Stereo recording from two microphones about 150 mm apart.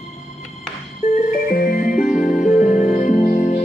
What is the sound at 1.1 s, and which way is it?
Music, 70° left (ahead or behind).